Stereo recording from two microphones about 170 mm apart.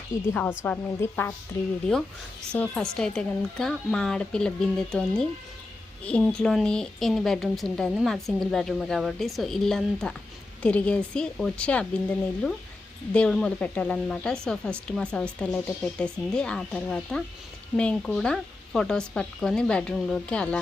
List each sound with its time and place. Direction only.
0.1 s a woman's voice: 50° left (ahead or behind)
0.6 s a woman's voice: 15° left (ahead or behind)
2.5 s a woman's voice: 5° left (ahead or behind)